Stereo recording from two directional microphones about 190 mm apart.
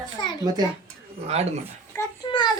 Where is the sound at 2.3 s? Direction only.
25° left (ahead or behind).